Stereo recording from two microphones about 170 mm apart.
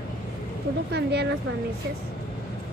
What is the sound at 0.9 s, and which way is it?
Speech, 75° right (ahead or behind).